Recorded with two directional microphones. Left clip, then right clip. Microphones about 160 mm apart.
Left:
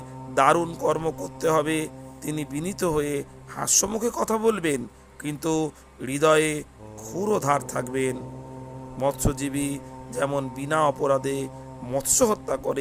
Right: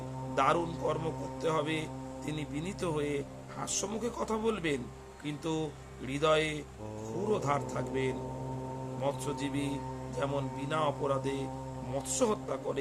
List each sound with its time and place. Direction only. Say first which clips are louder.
0.3 s a man's voice: left 9 dB; 50° left (ahead or behind)